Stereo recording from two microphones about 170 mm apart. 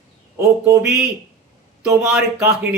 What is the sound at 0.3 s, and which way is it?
A man's voice, 15° right (ahead or behind).